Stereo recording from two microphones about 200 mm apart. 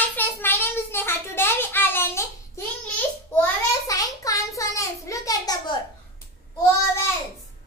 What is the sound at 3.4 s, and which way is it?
Child singing, 15° left (ahead or behind).